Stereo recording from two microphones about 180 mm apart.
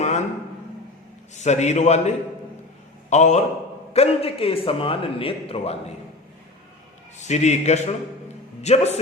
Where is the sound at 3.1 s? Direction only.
40° left (ahead or behind).